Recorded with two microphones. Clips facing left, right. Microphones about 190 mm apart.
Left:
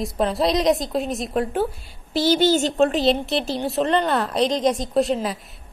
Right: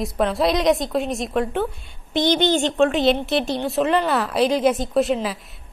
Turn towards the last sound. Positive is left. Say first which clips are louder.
# right 1 dB
turn(degrees=0)  # may be behind; listen again after turning